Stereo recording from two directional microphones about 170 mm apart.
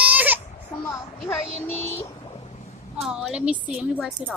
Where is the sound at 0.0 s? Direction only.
10° right (ahead or behind).